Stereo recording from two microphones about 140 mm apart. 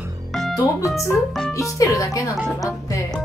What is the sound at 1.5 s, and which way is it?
Speech, 25° left (ahead or behind).